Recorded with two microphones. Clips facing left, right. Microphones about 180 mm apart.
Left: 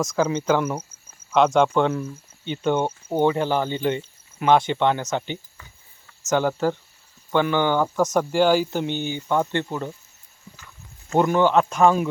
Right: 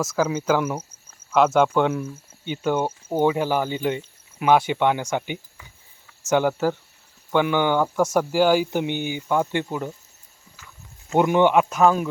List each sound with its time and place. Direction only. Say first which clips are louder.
0.0 s speech: left 1 dB; 5° right (ahead or behind)
11.1 s speech: right 1 dB; 15° right (ahead or behind)
11.7 s speech: left 1 dB; centre (ahead or behind)